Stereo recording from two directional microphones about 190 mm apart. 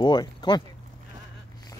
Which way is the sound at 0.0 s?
25° left (ahead or behind).